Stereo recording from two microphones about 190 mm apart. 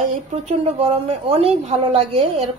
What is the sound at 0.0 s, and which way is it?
A woman's voice, 35° right (ahead or behind).